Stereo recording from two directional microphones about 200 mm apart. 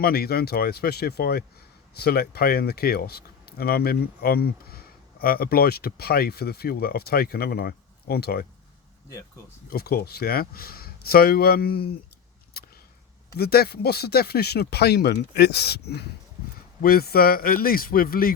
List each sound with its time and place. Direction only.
0.0 s speech: 50° left (ahead or behind)
9.6 s speech: 50° left (ahead or behind)
13.3 s speech: 50° left (ahead or behind)